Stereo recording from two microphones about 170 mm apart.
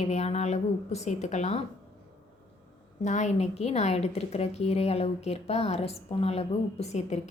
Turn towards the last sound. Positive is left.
turn(degrees=40)  # may be behind; listen again after turning